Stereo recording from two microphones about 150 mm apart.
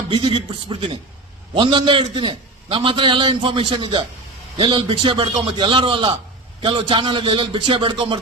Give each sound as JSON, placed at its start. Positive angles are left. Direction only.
{"t": 0.1, "sound": "a man's voice", "side_deg": -30}